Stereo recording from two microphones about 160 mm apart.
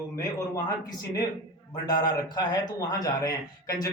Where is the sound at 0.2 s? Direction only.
20° left (ahead or behind).